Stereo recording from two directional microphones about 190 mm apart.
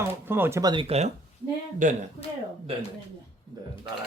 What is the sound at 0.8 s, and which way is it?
Speech, 35° right (ahead or behind).